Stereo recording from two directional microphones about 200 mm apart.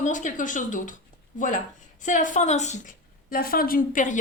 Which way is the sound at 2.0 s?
40° left (ahead or behind).